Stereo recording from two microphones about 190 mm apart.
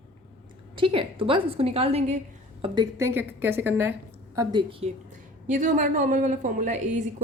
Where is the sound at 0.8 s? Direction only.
30° right (ahead or behind).